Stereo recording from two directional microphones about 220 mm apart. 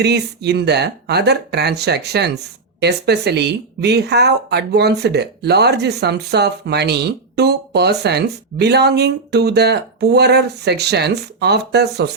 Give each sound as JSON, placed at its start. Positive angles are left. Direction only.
{"t": 0.0, "sound": "speech", "side_deg": -50}